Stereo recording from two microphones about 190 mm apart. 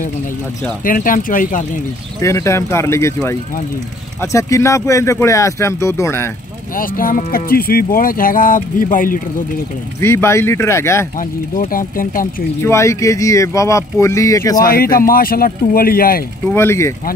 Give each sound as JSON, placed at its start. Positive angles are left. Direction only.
{"t": 0.8, "sound": "speech", "side_deg": 45}
{"t": 2.1, "sound": "speech", "side_deg": 15}
{"t": 4.2, "sound": "speech", "side_deg": 15}
{"t": 6.8, "sound": "speech", "side_deg": 45}
{"t": 9.9, "sound": "speech", "side_deg": 15}
{"t": 11.1, "sound": "speech", "side_deg": 45}
{"t": 12.6, "sound": "speech", "side_deg": 15}
{"t": 14.7, "sound": "speech", "side_deg": 50}
{"t": 16.5, "sound": "speech", "side_deg": 15}